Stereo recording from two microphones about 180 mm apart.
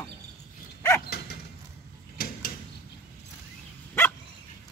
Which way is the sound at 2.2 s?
60° left (ahead or behind).